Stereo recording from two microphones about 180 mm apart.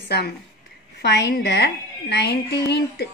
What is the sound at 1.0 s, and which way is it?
A woman's voice, 65° left (ahead or behind).